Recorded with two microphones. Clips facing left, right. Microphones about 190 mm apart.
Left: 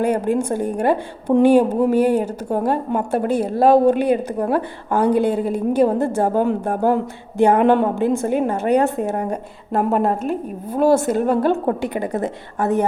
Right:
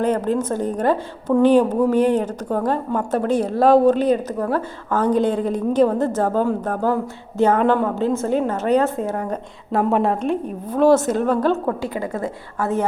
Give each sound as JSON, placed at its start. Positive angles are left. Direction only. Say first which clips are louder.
{"t": 0.0, "sound": "a woman's voice", "louder": "left 1 dB", "side_deg": 10}
{"t": 9.7, "sound": "a woman's voice", "louder": "even", "side_deg": 0}
{"t": 11.9, "sound": "a woman's voice", "louder": "left 3 dB", "side_deg": 20}